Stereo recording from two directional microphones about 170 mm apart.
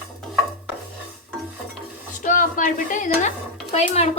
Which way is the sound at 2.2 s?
50° left (ahead or behind).